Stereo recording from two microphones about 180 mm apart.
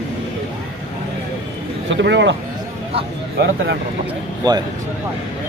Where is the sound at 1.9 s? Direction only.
80° right.